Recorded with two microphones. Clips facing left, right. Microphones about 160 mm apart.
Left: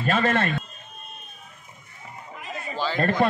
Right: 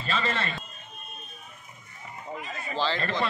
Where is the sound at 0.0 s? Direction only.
55° left (ahead or behind).